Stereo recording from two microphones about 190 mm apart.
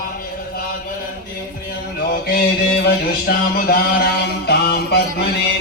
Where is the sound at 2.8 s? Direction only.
55° left (ahead or behind).